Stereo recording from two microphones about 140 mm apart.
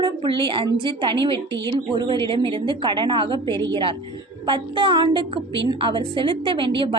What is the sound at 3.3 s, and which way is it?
Speech, 25° left (ahead or behind).